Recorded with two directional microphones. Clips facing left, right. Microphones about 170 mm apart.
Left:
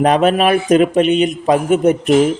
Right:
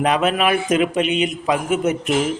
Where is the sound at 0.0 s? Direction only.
40° left (ahead or behind).